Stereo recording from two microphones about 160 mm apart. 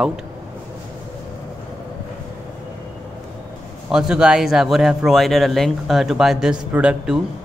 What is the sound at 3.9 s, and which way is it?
Speech, 5° right (ahead or behind).